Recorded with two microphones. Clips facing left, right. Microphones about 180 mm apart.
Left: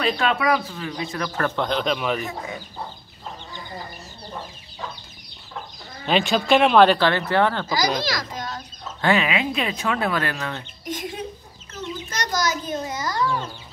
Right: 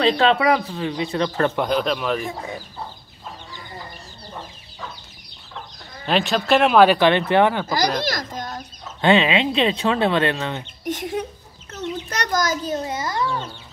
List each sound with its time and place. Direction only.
0.0 s speech: 30° right (ahead or behind)
1.6 s speech: 5° right (ahead or behind)
6.0 s speech: centre (ahead or behind)
7.0 s speech: 20° right (ahead or behind)
7.6 s a child's voice: 60° right (ahead or behind)
9.0 s speech: 25° right (ahead or behind)
11.7 s a child's voice: 60° right (ahead or behind)
12.8 s speech: 25° right (ahead or behind)